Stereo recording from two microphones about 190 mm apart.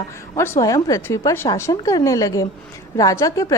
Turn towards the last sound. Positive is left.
turn(degrees=15)  # may be behind; listen again after turning